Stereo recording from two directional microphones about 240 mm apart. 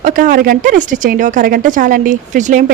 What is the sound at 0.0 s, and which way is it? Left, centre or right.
Speech, right.